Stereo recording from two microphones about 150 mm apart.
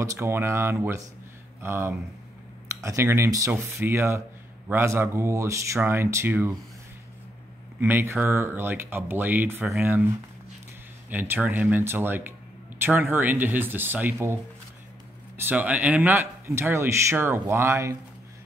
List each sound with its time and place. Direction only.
0.0 s speech: 20° right (ahead or behind)
7.8 s speech: 15° right (ahead or behind)